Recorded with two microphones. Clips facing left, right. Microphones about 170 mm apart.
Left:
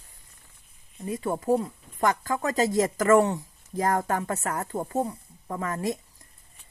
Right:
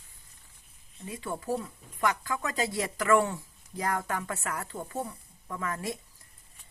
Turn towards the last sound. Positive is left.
turn(degrees=40)  # may be behind; listen again after turning